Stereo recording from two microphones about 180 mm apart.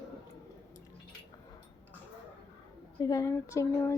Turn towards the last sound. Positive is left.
turn(degrees=15)  # may be behind; listen again after turning